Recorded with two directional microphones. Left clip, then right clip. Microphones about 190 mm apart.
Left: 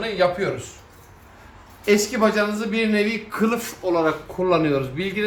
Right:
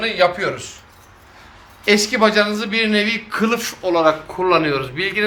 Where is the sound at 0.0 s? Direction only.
20° right (ahead or behind).